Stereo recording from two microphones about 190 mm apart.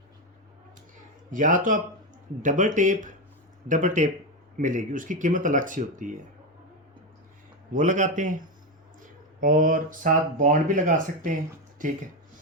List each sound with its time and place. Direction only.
1.3 s a man's voice: 45° right (ahead or behind)
7.7 s a man's voice: 40° right (ahead or behind)
9.4 s speech: 45° right (ahead or behind)